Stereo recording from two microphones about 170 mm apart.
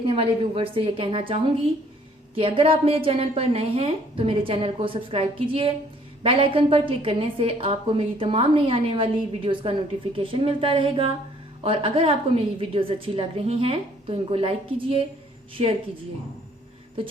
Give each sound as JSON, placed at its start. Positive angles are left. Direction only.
{"t": 0.0, "sound": "a woman's voice", "side_deg": -30}